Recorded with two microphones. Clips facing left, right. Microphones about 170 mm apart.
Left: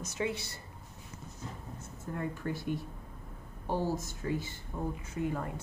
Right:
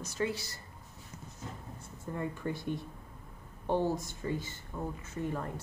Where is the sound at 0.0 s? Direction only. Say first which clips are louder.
Even; 20° left (ahead or behind).